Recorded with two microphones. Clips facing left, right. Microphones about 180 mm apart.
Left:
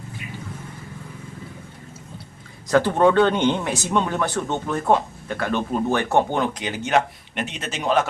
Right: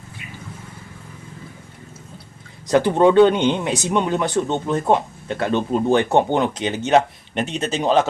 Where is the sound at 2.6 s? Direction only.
15° right (ahead or behind).